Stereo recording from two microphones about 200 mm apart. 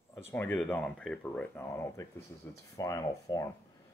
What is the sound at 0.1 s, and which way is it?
Speech, 10° left (ahead or behind).